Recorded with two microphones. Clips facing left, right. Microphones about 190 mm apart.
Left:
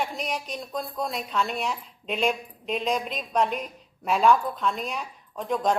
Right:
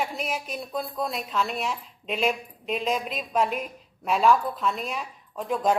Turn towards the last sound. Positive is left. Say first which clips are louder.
# right 1 dB
turn(degrees=-5)  # may be behind; listen again after turning